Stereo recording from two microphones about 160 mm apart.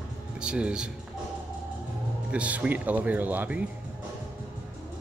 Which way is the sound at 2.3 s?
5° right (ahead or behind).